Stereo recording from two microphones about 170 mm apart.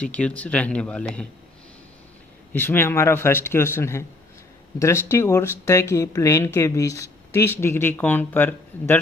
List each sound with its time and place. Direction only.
0.0 s speech: 5° left (ahead or behind)
2.5 s speech: 10° left (ahead or behind)